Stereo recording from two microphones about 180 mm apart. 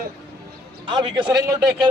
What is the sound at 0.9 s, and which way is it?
Speech, 25° right (ahead or behind).